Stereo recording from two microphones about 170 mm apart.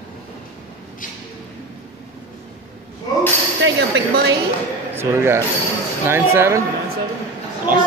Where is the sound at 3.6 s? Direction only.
90° right.